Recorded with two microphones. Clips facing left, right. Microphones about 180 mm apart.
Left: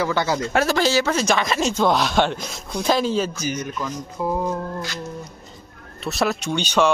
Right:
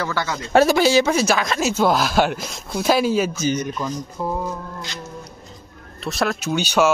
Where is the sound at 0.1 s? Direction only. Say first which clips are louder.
Left 4 dB; 25° left (ahead or behind).